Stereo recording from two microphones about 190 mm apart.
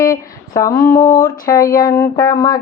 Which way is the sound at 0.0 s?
15° left (ahead or behind).